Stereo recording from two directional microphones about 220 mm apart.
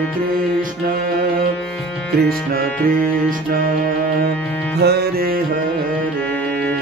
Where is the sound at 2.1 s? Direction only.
45° right (ahead or behind).